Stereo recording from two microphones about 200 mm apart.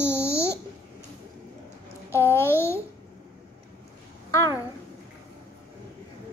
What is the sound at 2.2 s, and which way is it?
Babbling, 10° right (ahead or behind).